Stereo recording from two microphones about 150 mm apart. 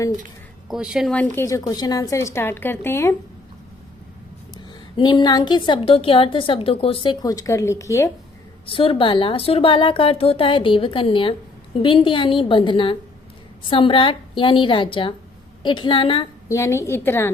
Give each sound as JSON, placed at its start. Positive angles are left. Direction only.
{"t": 0.7, "sound": "speech", "side_deg": -5}
{"t": 1.1, "sound": "a woman's voice", "side_deg": 10}
{"t": 1.5, "sound": "a woman's voice", "side_deg": 25}
{"t": 4.5, "sound": "a woman's voice", "side_deg": 30}
{"t": 8.6, "sound": "a woman's voice", "side_deg": 35}
{"t": 16.5, "sound": "a woman's voice", "side_deg": 20}